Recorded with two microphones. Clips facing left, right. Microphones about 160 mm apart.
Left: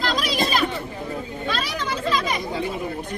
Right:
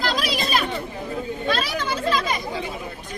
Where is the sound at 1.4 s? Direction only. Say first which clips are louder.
Right 3 dB; 5° right (ahead or behind).